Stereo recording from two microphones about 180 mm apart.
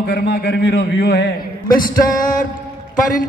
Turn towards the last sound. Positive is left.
turn(degrees=45)  # may be behind; listen again after turning